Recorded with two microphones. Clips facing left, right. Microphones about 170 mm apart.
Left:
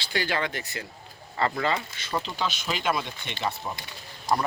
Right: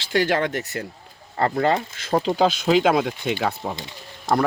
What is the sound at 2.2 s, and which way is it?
Speech, 90° right.